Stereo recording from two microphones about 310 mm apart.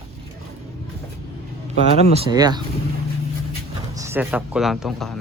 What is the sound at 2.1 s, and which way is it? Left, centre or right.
Speech, centre.